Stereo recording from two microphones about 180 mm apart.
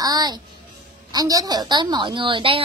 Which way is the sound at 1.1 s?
20° right (ahead or behind).